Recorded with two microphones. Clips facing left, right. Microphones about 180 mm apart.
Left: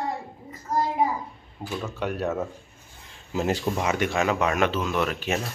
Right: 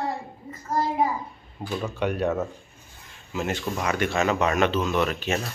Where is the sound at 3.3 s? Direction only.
35° left (ahead or behind).